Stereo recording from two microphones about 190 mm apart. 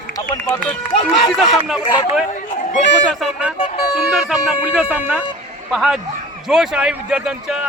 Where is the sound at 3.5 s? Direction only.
40° left (ahead or behind).